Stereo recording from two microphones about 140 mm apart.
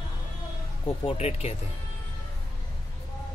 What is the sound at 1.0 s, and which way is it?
Speech, 50° left (ahead or behind).